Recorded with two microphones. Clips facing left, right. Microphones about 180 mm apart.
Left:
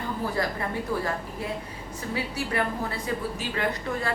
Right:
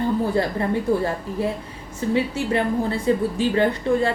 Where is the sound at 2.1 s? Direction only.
25° right (ahead or behind).